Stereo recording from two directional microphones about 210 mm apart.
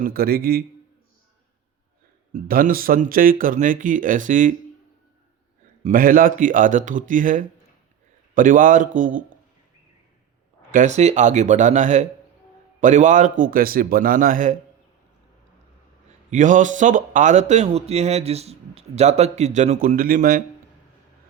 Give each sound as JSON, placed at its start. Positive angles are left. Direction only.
{"t": 0.0, "sound": "a man's voice", "side_deg": -45}
{"t": 2.3, "sound": "speech", "side_deg": -45}
{"t": 5.8, "sound": "speech", "side_deg": -40}
{"t": 10.7, "sound": "speech", "side_deg": -35}
{"t": 16.3, "sound": "speech", "side_deg": -35}